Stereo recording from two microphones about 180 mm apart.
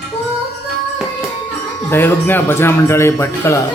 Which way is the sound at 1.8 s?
10° left (ahead or behind).